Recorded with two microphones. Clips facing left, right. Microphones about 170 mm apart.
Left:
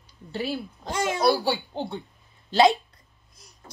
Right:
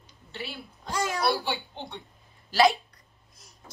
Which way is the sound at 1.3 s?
40° left (ahead or behind).